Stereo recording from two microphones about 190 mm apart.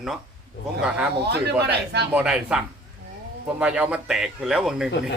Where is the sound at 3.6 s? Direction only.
5° right (ahead or behind).